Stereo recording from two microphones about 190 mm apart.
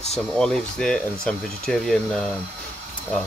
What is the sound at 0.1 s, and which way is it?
Speech, 5° left (ahead or behind).